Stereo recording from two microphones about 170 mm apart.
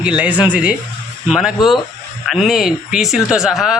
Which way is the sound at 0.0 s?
5° right (ahead or behind).